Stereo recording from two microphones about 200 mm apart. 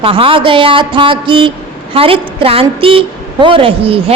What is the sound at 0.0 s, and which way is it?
Speech, 25° right (ahead or behind).